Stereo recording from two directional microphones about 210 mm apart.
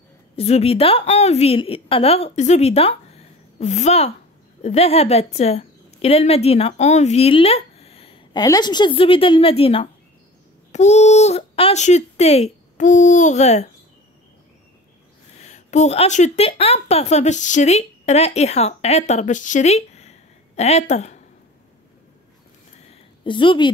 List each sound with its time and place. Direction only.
0.4 s a woman's voice: 30° left (ahead or behind)
15.4 s a woman's voice: 35° left (ahead or behind)
22.8 s a sound: 25° left (ahead or behind)